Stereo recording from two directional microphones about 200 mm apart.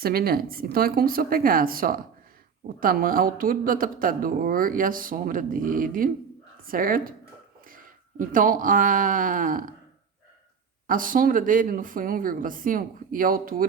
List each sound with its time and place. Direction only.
0.0 s speech: 50° right (ahead or behind)
8.2 s speech: 40° right (ahead or behind)
10.8 s speech: 45° right (ahead or behind)